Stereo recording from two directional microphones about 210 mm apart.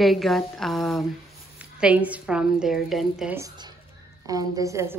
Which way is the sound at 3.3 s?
20° right (ahead or behind).